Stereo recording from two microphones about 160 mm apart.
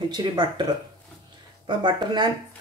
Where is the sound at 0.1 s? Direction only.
25° right (ahead or behind).